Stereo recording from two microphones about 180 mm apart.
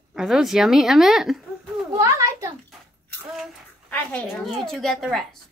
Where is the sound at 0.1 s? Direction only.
Centre (ahead or behind).